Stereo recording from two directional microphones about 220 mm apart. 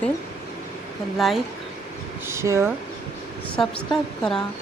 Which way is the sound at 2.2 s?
15° right (ahead or behind).